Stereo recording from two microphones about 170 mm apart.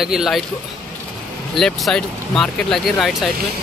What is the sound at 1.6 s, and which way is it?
Speech, 5° left (ahead or behind).